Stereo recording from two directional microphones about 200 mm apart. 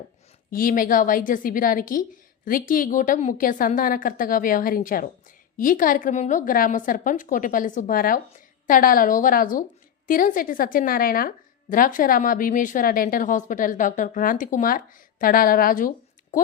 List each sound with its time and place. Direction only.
0.5 s a woman's voice: 45° left (ahead or behind)